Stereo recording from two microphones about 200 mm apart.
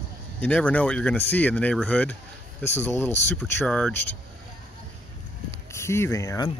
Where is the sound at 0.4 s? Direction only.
5° left (ahead or behind).